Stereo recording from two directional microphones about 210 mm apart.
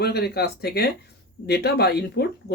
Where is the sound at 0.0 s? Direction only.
50° left (ahead or behind).